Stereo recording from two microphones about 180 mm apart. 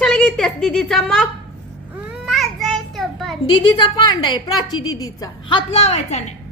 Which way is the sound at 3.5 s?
25° left (ahead or behind).